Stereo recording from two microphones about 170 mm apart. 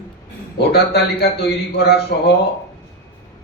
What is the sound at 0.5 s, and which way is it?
A man's voice, 70° left (ahead or behind).